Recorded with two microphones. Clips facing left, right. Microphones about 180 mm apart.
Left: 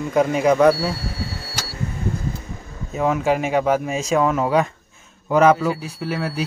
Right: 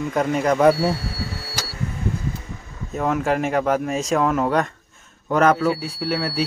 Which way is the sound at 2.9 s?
Centre (ahead or behind).